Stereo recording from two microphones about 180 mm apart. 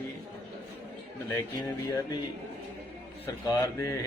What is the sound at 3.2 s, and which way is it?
Speech, 15° left (ahead or behind).